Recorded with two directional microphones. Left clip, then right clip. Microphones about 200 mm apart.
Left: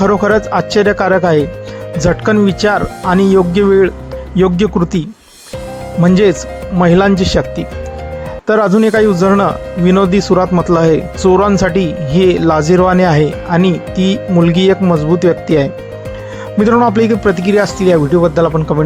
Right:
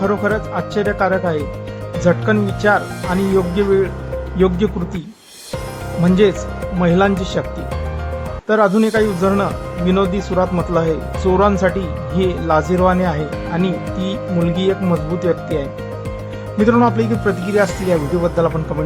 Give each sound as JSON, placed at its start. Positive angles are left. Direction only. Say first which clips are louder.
{"t": 0.0, "sound": "speech", "louder": "left 7 dB", "side_deg": 35}
{"t": 8.4, "sound": "speech", "louder": "left 4 dB", "side_deg": 30}